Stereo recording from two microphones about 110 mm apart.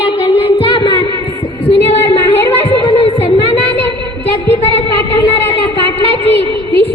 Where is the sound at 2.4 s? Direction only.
45° left (ahead or behind).